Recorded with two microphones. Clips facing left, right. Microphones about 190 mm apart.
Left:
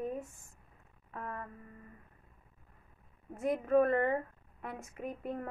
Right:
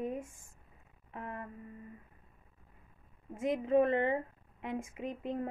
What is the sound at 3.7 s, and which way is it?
Speech, 20° right (ahead or behind).